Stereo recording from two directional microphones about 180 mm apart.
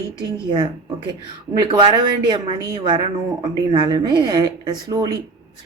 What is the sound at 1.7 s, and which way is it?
Speech, 25° right (ahead or behind).